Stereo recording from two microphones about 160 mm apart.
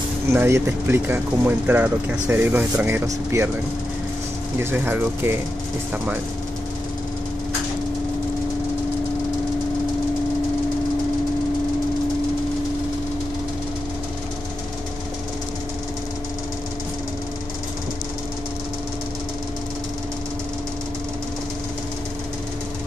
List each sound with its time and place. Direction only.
0.3 s speech: 15° right (ahead or behind)
4.6 s speech: 15° right (ahead or behind)